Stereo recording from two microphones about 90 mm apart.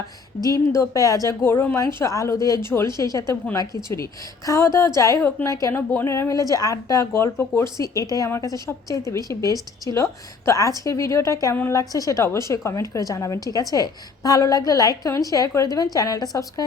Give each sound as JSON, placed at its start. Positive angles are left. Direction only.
{"t": 0.4, "sound": "a woman's voice", "side_deg": 35}
{"t": 1.5, "sound": "a woman's voice", "side_deg": 25}